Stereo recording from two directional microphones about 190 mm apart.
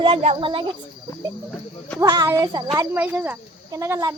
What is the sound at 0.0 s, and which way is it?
Speech, 30° right (ahead or behind).